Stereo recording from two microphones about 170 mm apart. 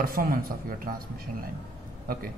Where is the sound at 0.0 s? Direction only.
55° right (ahead or behind).